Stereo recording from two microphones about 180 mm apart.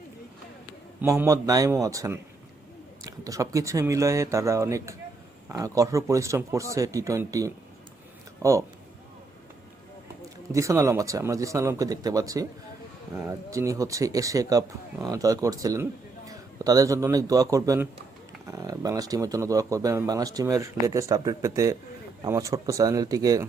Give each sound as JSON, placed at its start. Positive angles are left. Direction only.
{"t": 1.1, "sound": "speech", "side_deg": -15}
{"t": 10.5, "sound": "a man's voice", "side_deg": -15}